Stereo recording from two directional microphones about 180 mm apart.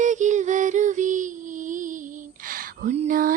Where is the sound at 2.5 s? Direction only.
50° right (ahead or behind).